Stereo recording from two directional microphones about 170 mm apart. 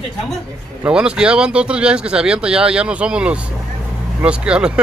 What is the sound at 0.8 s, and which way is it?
Speech, 5° right (ahead or behind).